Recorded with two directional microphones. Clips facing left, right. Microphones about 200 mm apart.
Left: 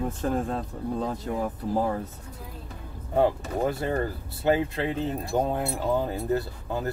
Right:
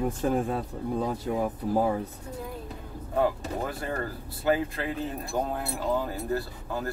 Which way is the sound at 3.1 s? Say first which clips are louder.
Left 3 dB; 25° left (ahead or behind).